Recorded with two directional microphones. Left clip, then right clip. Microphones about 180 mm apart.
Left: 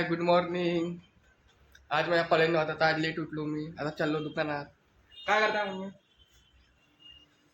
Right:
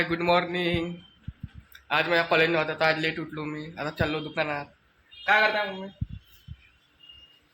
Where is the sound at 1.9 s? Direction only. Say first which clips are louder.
Right 3 dB; 5° right (ahead or behind).